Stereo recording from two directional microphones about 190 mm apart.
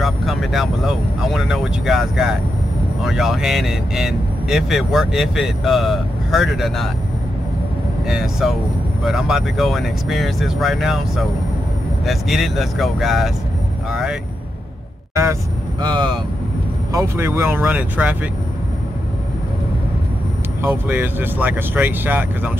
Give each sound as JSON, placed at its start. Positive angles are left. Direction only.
{"t": 0.0, "sound": "speech", "side_deg": 0}
{"t": 8.1, "sound": "speech", "side_deg": 0}
{"t": 15.8, "sound": "speech", "side_deg": -20}
{"t": 20.6, "sound": "speech", "side_deg": -10}